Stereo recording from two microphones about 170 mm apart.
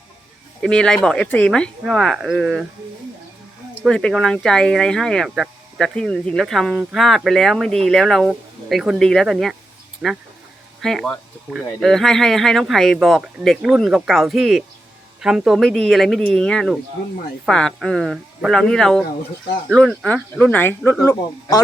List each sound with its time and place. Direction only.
0.6 s speech: 5° left (ahead or behind)
3.8 s speech: 5° left (ahead or behind)